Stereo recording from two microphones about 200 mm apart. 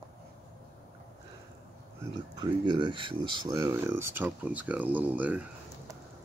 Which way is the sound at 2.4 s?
25° right (ahead or behind).